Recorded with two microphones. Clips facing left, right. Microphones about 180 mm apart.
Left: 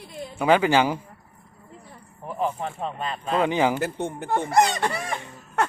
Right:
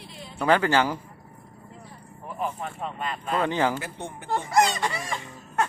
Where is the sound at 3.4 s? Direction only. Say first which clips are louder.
Left 3 dB; 15° left (ahead or behind).